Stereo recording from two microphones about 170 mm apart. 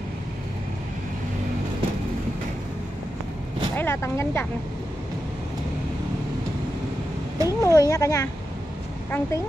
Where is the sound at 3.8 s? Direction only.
15° left (ahead or behind).